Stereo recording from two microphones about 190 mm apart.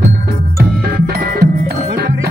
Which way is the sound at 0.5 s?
55° right (ahead or behind).